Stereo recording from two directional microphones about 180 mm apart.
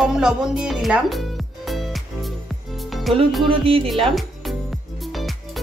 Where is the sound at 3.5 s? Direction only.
30° right (ahead or behind).